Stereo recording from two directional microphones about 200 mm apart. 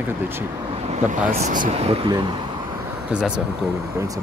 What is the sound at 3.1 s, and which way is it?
Speech, 5° right (ahead or behind).